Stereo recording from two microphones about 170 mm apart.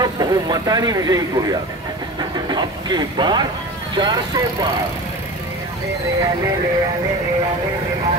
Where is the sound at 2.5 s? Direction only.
25° right (ahead or behind).